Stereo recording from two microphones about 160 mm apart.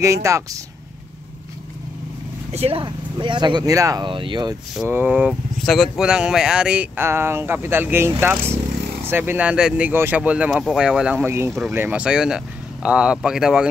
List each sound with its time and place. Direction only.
0.0 s speech: 20° right (ahead or behind)
2.5 s speech: 40° right (ahead or behind)
4.8 s speech: 10° right (ahead or behind)